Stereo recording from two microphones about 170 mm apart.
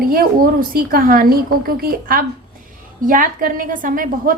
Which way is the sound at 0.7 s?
55° right (ahead or behind).